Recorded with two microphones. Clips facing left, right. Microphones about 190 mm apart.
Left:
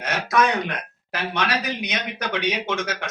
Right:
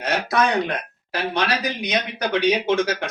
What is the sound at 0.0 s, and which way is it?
A man's voice, 35° right (ahead or behind).